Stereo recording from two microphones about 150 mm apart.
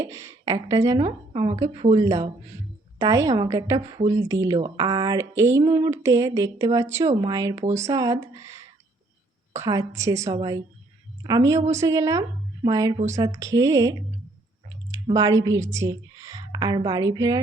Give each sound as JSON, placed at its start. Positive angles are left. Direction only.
{"t": 0.0, "sound": "speech", "side_deg": -20}
{"t": 1.3, "sound": "a woman's voice", "side_deg": -35}
{"t": 2.0, "sound": "speech", "side_deg": -25}
{"t": 15.1, "sound": "a woman's voice", "side_deg": -20}